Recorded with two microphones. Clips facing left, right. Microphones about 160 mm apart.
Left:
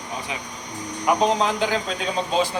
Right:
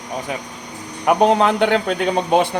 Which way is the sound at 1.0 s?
55° right (ahead or behind).